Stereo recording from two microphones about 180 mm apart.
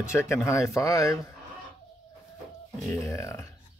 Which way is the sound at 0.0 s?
15° left (ahead or behind).